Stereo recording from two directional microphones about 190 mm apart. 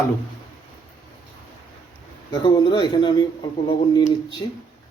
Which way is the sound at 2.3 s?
25° left (ahead or behind).